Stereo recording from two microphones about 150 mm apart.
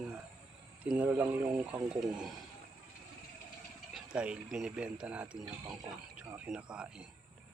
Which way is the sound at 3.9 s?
5° right (ahead or behind).